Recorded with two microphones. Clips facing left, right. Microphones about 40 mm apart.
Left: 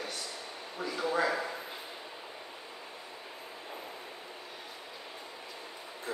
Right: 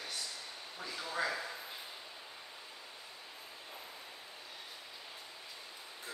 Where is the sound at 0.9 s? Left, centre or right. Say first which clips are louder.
Left 7 dB; left.